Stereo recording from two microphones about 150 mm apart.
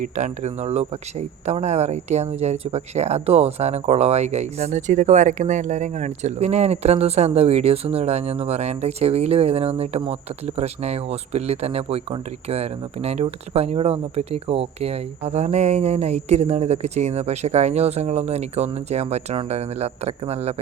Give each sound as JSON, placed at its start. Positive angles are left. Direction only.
{"t": 0.2, "sound": "speech", "side_deg": -45}